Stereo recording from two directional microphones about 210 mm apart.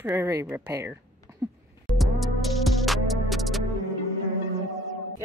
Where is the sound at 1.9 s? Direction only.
Centre (ahead or behind).